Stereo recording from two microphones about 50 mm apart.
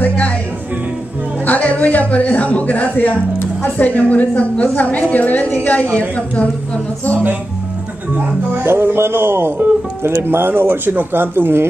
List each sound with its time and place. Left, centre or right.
1.4 s a man's voice: left
8.6 s a man's voice: right